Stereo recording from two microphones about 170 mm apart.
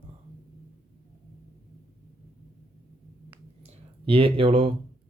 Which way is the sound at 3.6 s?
30° right (ahead or behind).